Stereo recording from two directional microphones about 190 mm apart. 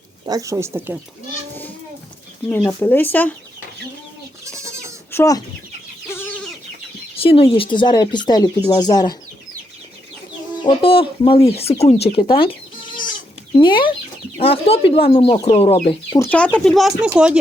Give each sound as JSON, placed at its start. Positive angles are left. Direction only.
{"t": 0.3, "sound": "speech", "side_deg": -15}
{"t": 2.6, "sound": "speech", "side_deg": 10}
{"t": 4.4, "sound": "goat", "side_deg": -15}
{"t": 5.1, "sound": "speech", "side_deg": 15}
{"t": 7.2, "sound": "speech", "side_deg": 30}
{"t": 10.6, "sound": "speech", "side_deg": 25}
{"t": 13.6, "sound": "speech", "side_deg": 25}
{"t": 16.1, "sound": "speech", "side_deg": 10}